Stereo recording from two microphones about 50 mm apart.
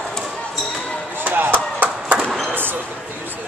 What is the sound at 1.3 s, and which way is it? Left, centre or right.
Chop, right.